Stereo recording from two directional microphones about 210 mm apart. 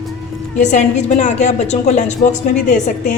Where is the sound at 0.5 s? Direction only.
35° left (ahead or behind).